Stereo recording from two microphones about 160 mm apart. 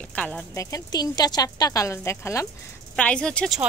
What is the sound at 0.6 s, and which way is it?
Speech, 20° left (ahead or behind).